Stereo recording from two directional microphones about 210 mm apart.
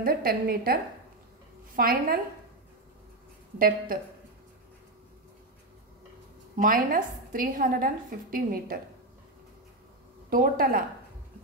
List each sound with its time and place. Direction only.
0.0 s a woman's voice: 45° right (ahead or behind)
1.8 s a woman's voice: 45° right (ahead or behind)
3.5 s a woman's voice: 45° right (ahead or behind)
6.5 s a woman's voice: 40° right (ahead or behind)
10.3 s a woman's voice: 45° right (ahead or behind)